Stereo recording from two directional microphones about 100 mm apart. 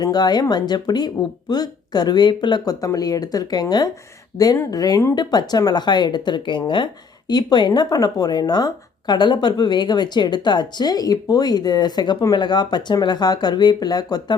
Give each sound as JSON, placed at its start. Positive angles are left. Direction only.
{"t": 0.0, "sound": "a woman's voice", "side_deg": 45}
{"t": 4.3, "sound": "speech", "side_deg": 90}
{"t": 4.7, "sound": "a woman's voice", "side_deg": 40}